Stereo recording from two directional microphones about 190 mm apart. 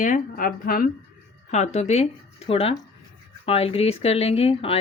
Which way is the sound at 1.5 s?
35° left (ahead or behind).